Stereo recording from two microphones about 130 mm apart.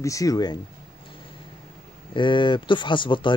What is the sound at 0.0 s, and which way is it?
Speech, 25° left (ahead or behind).